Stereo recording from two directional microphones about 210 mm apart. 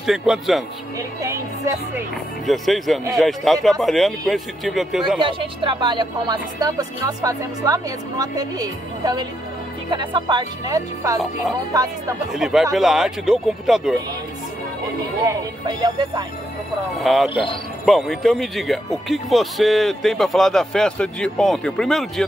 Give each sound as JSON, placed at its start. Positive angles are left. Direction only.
{"t": 0.0, "sound": "speech", "side_deg": 0}
{"t": 0.9, "sound": "speech", "side_deg": -15}
{"t": 2.4, "sound": "speech", "side_deg": 0}
{"t": 5.2, "sound": "speech", "side_deg": -25}
{"t": 12.3, "sound": "speech", "side_deg": 0}
{"t": 15.2, "sound": "speech", "side_deg": -20}
{"t": 17.0, "sound": "speech", "side_deg": 0}
{"t": 17.3, "sound": "speech", "side_deg": 25}
{"t": 17.8, "sound": "speech", "side_deg": 0}